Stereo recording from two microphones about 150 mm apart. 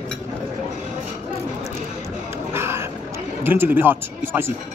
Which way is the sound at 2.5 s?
15° right (ahead or behind).